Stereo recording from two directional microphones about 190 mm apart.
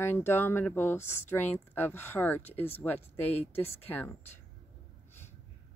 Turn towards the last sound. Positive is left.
turn(degrees=10)  # may be behind; listen again after turning